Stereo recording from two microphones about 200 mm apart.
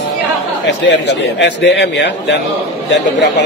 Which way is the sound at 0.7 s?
60° left (ahead or behind).